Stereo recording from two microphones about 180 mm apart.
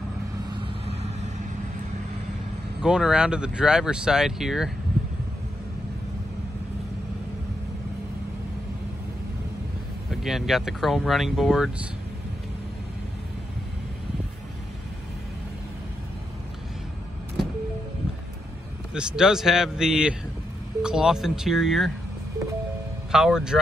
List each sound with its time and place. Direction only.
0.8 s vehicle: 35° right (ahead or behind)
2.8 s speech: 5° right (ahead or behind)
10.2 s speech: centre (ahead or behind)
18.9 s speech: 5° right (ahead or behind)
23.1 s speech: 5° right (ahead or behind)